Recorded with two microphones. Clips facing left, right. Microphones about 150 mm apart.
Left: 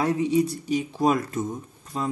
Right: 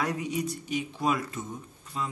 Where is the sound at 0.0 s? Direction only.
30° left (ahead or behind).